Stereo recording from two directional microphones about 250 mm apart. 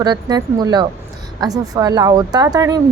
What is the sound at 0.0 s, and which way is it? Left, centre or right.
A woman's voice, centre.